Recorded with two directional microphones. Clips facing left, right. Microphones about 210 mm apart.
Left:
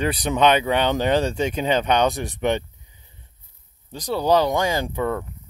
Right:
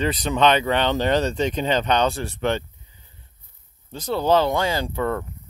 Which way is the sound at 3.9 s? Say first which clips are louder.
Even; 15° left (ahead or behind).